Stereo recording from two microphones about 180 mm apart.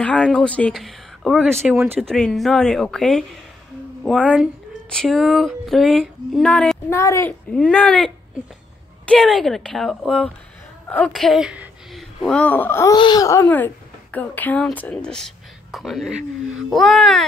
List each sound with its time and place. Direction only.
0.0 s a woman's voice: 5° left (ahead or behind)
12.9 s speech: 25° left (ahead or behind); by 17.3 s centre (ahead or behind)